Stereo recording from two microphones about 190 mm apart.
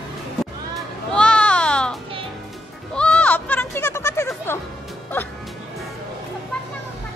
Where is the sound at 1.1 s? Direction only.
5° left (ahead or behind).